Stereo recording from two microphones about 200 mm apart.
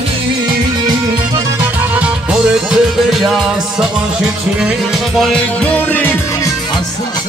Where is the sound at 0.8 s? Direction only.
20° right (ahead or behind).